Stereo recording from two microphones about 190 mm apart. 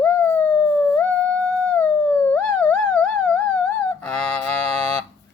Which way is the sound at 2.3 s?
5° left (ahead or behind).